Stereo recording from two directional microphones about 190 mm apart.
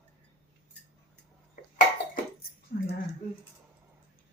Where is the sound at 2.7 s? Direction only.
55° left (ahead or behind).